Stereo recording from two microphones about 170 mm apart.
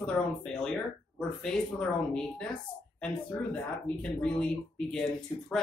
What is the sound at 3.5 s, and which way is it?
Speech, 5° left (ahead or behind).